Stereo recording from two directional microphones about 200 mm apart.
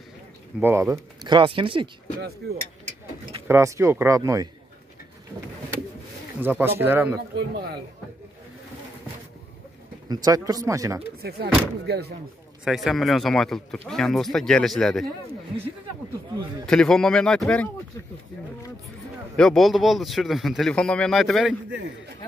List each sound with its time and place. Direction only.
0.6 s speech: 10° right (ahead or behind)
3.4 s speech: 15° right (ahead or behind)
6.4 s speech: 10° right (ahead or behind)
7.3 s a man's voice: 55° right (ahead or behind)
10.0 s speech: 20° right (ahead or behind)
11.2 s speech: 55° right (ahead or behind)
12.6 s speech: centre (ahead or behind)
16.6 s speech: 5° left (ahead or behind)
19.3 s speech: centre (ahead or behind)